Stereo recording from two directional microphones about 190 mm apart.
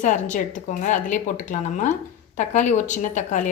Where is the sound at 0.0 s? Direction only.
40° left (ahead or behind).